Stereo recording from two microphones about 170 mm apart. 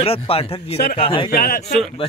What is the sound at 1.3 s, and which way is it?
Speech, 60° left (ahead or behind).